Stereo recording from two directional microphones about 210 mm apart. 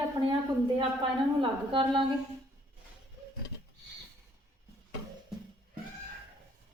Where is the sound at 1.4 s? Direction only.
25° right (ahead or behind).